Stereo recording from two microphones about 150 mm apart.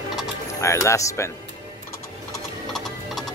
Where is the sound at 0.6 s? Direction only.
20° left (ahead or behind).